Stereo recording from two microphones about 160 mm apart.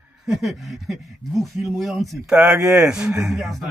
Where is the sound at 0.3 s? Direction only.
Centre (ahead or behind).